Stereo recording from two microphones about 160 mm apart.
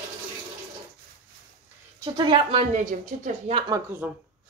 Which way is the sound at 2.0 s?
30° right (ahead or behind).